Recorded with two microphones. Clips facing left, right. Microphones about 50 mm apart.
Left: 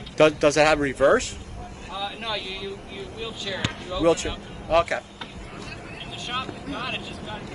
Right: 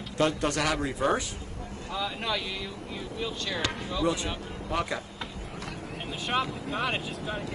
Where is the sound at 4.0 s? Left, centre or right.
Left.